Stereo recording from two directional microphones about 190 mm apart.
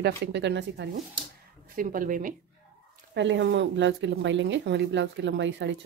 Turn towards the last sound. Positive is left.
turn(degrees=-75)  # may be behind; listen again after turning